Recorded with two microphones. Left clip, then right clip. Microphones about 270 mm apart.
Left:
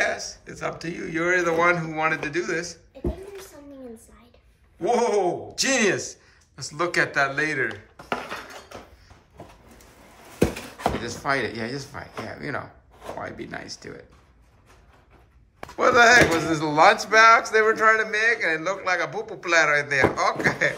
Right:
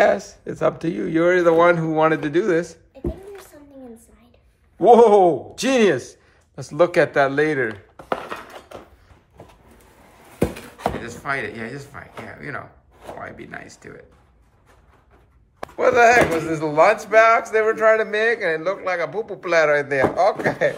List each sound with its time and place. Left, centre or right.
0.0 s speech: centre
4.7 s speech: centre
8.1 s dishes: right
10.5 s speech: centre
15.6 s speech: centre